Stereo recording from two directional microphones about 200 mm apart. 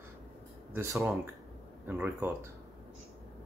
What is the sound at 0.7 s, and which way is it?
Speech, 10° right (ahead or behind).